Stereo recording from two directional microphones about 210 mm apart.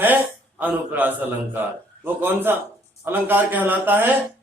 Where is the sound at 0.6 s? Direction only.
10° right (ahead or behind).